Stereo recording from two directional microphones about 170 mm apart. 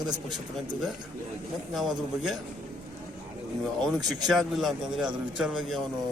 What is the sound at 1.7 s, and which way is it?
Speech, centre (ahead or behind).